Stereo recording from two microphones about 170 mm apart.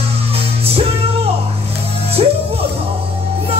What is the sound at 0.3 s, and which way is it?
Music, 35° right (ahead or behind).